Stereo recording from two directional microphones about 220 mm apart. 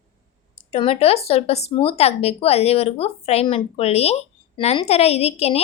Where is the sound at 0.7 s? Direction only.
25° left (ahead or behind).